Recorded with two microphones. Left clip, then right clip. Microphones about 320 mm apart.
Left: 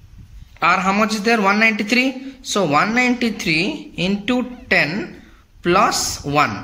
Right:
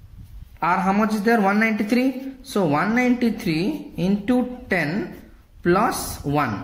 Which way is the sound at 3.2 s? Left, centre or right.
Left.